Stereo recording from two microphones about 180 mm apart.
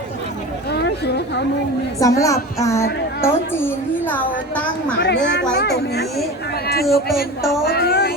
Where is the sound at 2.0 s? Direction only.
20° left (ahead or behind).